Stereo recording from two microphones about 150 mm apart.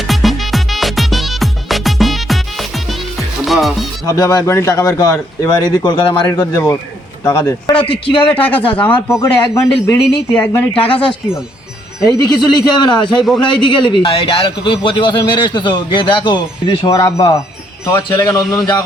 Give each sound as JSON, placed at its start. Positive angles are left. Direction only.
{"t": 0.1, "sound": "music", "side_deg": 0}
{"t": 4.0, "sound": "a man's voice", "side_deg": 25}
{"t": 8.4, "sound": "a man's voice", "side_deg": 10}
{"t": 12.2, "sound": "a man's voice", "side_deg": 30}